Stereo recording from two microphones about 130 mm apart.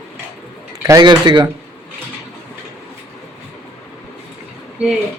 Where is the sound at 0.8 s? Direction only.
30° right (ahead or behind).